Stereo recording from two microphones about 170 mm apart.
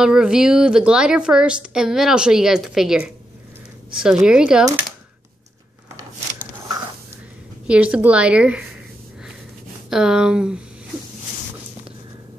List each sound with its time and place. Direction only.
0.0 s a woman's voice: 5° right (ahead or behind)
7.6 s a woman's voice: 5° right (ahead or behind)
9.8 s a woman's voice: 5° right (ahead or behind)